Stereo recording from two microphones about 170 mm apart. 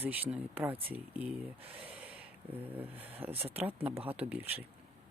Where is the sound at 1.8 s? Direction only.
10° right (ahead or behind).